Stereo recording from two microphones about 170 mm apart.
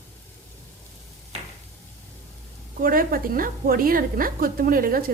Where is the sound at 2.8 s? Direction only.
55° right (ahead or behind).